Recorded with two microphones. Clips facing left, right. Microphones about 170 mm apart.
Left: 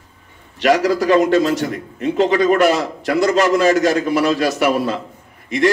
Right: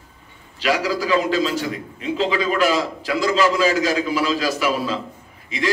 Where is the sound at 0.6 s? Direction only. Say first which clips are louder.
Left 6 dB; 70° left (ahead or behind).